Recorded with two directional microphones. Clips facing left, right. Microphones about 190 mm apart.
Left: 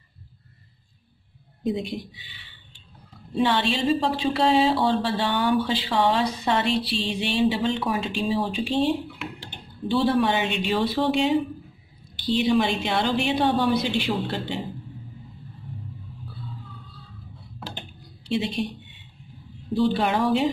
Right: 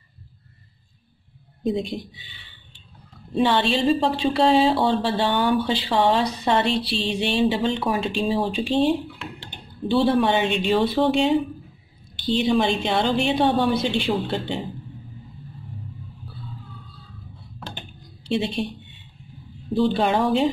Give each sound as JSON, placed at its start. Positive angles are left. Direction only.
{"t": 1.6, "sound": "speech", "side_deg": -25}
{"t": 3.4, "sound": "speech", "side_deg": -30}
{"t": 9.8, "sound": "speech", "side_deg": -25}
{"t": 12.4, "sound": "speech", "side_deg": -30}
{"t": 18.3, "sound": "speech", "side_deg": -30}
{"t": 19.7, "sound": "speech", "side_deg": -25}